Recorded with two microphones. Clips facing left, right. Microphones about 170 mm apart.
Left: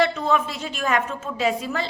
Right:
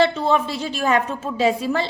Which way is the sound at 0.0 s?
30° right (ahead or behind).